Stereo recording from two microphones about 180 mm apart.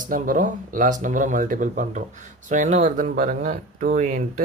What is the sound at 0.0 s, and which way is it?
Speech, 50° right (ahead or behind).